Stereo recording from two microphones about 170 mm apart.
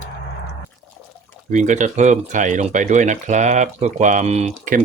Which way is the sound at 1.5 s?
45° right (ahead or behind).